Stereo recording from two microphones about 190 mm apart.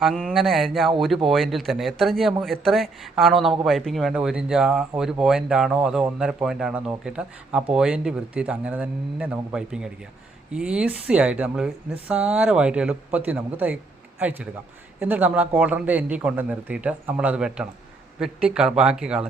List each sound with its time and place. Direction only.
0.0 s a man's voice: centre (ahead or behind)